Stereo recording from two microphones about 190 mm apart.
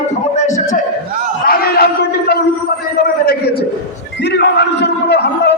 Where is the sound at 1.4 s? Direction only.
55° left (ahead or behind).